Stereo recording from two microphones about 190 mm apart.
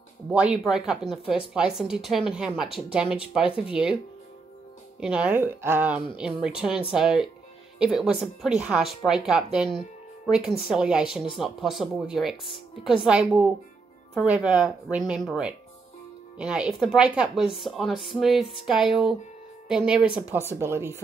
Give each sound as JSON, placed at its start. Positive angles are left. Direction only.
{"t": 0.3, "sound": "speech", "side_deg": -5}
{"t": 5.0, "sound": "speech", "side_deg": -5}